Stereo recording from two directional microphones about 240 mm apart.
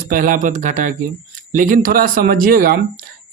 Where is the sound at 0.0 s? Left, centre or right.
Right.